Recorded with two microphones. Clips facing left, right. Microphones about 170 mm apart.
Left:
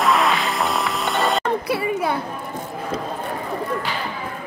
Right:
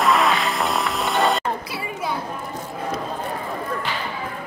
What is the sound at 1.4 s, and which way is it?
Chatter, 60° left (ahead or behind).